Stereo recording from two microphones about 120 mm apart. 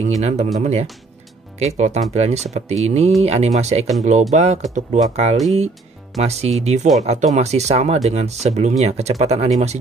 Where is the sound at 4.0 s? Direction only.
75° right (ahead or behind).